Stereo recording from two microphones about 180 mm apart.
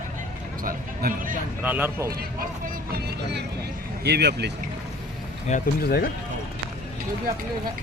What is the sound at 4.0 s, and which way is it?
Speech, 65° right (ahead or behind).